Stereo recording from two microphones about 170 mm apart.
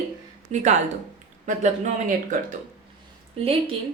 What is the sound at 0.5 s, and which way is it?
A woman's voice, 40° right (ahead or behind).